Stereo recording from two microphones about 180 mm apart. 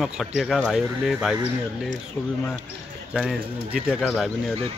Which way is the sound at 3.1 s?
5° right (ahead or behind).